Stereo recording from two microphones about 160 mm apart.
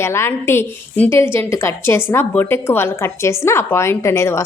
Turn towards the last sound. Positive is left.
turn(degrees=15)  # may be behind; listen again after turning